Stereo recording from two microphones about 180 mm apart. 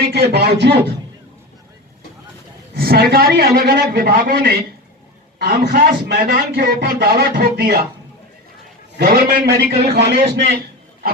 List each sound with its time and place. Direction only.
0.1 s a man's voice: 65° right (ahead or behind)
2.7 s a man's voice: 55° right (ahead or behind)
9.0 s a man's voice: 60° right (ahead or behind)